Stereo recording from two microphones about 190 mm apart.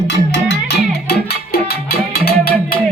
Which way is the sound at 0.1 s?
65° left (ahead or behind).